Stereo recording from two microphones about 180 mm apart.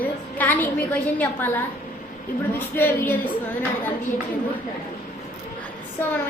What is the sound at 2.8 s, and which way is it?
Speech, 10° left (ahead or behind).